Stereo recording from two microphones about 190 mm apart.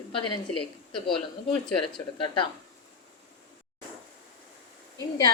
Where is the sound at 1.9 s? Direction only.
25° left (ahead or behind).